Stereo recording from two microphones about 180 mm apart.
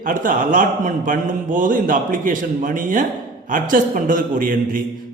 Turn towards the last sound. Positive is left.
turn(degrees=-50)  # may be behind; listen again after turning